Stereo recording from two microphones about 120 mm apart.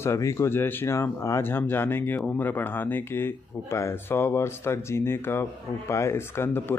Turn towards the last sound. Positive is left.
turn(degrees=20)  # may be behind; listen again after turning